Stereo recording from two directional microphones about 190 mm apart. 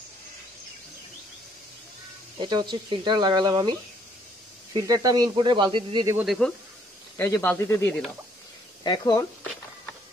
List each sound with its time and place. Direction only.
2.4 s speech: 25° right (ahead or behind)
4.7 s speech: 20° right (ahead or behind)
6.1 s speech: centre (ahead or behind)
7.2 s speech: 15° left (ahead or behind)
8.8 s speech: 20° left (ahead or behind)